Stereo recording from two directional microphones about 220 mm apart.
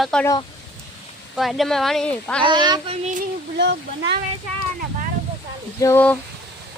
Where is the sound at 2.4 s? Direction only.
20° right (ahead or behind).